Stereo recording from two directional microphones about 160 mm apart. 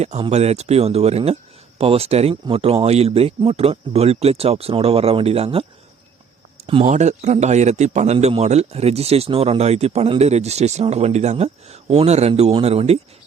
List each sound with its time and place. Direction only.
0.3 s speech: 45° right (ahead or behind)
6.7 s speech: 35° right (ahead or behind)
6.9 s a man's voice: 45° right (ahead or behind)